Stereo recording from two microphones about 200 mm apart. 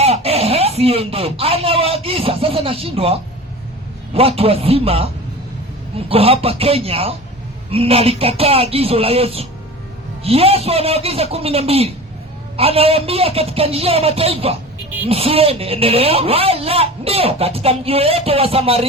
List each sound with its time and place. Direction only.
0.0 s speech: 30° right (ahead or behind)
6.1 s speech: 30° right (ahead or behind)